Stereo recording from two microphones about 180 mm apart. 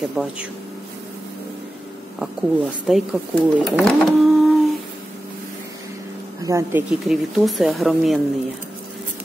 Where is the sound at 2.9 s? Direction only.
Centre (ahead or behind).